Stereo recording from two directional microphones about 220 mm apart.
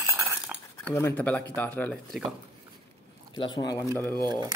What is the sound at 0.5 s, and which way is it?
Cutlery, 5° right (ahead or behind).